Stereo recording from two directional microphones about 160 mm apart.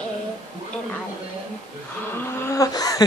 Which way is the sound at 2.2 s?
20° left (ahead or behind).